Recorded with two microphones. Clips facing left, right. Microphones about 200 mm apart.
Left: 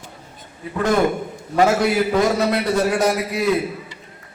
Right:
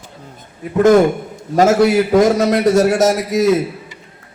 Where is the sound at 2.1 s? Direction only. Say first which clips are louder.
Right 6 dB; 45° right (ahead or behind).